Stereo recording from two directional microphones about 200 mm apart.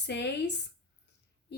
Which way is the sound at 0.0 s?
60° left (ahead or behind).